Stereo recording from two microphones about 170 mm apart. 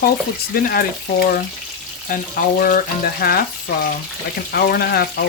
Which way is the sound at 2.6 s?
60° left (ahead or behind).